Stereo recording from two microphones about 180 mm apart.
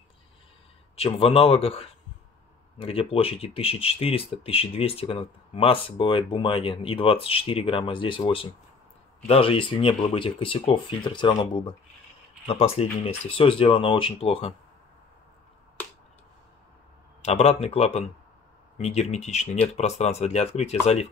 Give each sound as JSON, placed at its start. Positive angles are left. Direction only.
{"t": 0.9, "sound": "speech", "side_deg": 35}
{"t": 17.2, "sound": "speech", "side_deg": 35}